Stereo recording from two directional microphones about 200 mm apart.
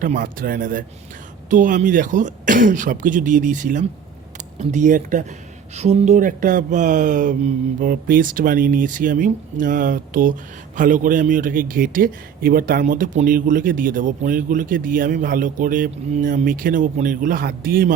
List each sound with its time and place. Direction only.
0.0 s a man's voice: 45° right (ahead or behind)